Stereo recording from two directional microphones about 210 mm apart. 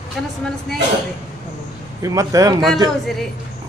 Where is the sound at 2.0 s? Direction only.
15° right (ahead or behind).